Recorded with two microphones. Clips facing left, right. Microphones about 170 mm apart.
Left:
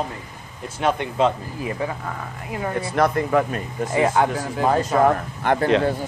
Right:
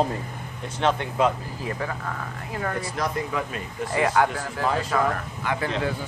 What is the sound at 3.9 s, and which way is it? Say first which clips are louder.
Speech: left 3 dB; 25° left (ahead or behind).